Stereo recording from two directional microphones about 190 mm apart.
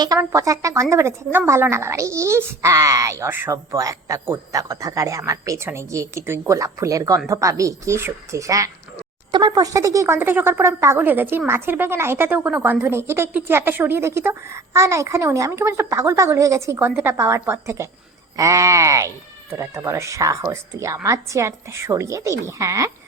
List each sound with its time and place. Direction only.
0.0 s speech: 20° right (ahead or behind)